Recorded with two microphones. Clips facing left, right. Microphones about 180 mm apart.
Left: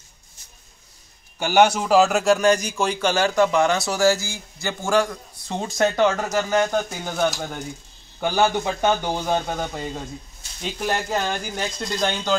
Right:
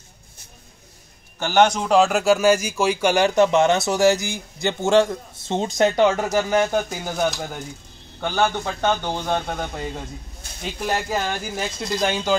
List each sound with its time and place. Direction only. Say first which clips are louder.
1.4 s a man's voice: even; 10° left (ahead or behind)
8.2 s speech: left 2 dB; 10° left (ahead or behind); by 12.4 s 5° right (ahead or behind)